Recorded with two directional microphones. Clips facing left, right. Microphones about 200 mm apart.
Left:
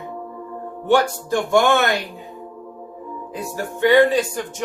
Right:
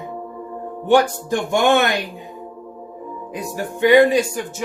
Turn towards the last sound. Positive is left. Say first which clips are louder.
# right 2 dB
turn(degrees=-10)  # may be behind; listen again after turning